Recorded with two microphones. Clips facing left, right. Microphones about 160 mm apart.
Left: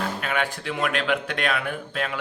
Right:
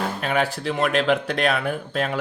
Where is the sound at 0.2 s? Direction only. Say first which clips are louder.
Right 4 dB; 35° right (ahead or behind).